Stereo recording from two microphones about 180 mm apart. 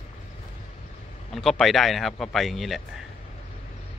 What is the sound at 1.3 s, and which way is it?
Speech, centre (ahead or behind).